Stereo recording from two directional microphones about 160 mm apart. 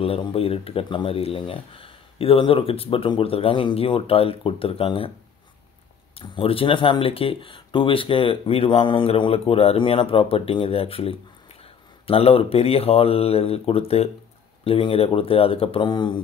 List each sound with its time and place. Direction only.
0.0 s speech: 35° left (ahead or behind)
6.1 s speech: 35° left (ahead or behind)